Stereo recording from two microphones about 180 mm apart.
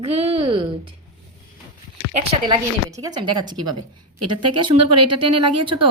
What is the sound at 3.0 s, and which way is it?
Speech, 20° right (ahead or behind).